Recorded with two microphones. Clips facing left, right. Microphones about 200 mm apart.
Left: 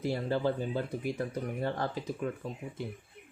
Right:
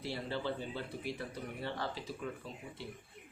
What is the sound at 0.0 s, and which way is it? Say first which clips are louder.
Speech: left 8 dB; 45° left (ahead or behind).